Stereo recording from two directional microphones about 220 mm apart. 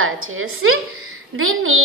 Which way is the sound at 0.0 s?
65° right (ahead or behind).